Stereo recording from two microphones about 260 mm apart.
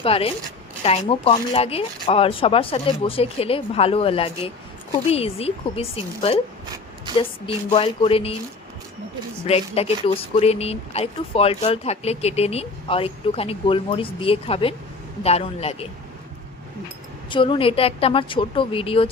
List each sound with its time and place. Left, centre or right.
0.0 s speech: left
9.5 s speech: left
17.2 s speech: centre